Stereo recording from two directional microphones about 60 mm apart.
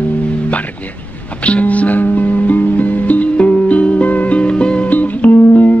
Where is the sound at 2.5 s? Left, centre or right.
Left.